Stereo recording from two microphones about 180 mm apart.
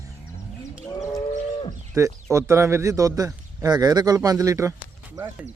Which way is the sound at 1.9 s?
15° right (ahead or behind).